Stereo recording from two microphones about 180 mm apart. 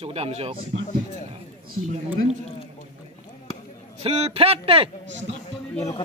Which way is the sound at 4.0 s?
35° right (ahead or behind).